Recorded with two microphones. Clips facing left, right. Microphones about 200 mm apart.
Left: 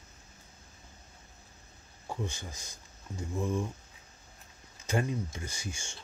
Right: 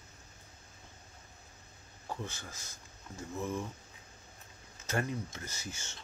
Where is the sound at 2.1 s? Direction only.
15° left (ahead or behind).